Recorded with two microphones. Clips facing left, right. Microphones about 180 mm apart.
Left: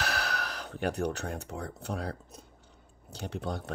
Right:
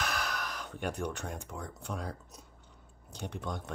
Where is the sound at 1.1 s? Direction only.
65° left (ahead or behind).